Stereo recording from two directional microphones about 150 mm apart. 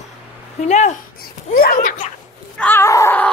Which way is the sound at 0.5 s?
50° left (ahead or behind).